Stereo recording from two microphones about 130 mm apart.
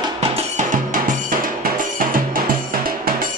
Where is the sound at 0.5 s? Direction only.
90° right.